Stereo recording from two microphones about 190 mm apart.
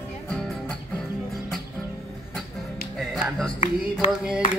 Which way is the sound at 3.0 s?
Centre (ahead or behind).